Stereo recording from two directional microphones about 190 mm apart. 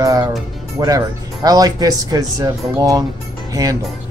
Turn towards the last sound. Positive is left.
turn(degrees=-20)  # may be behind; listen again after turning